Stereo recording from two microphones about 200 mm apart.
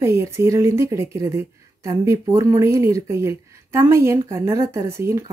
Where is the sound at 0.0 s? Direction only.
15° right (ahead or behind).